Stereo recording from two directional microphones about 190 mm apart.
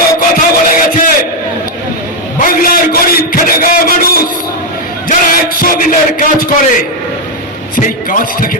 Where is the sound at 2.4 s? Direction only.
50° left (ahead or behind).